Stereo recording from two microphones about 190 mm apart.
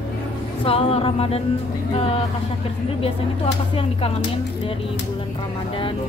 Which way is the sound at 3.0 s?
30° left (ahead or behind).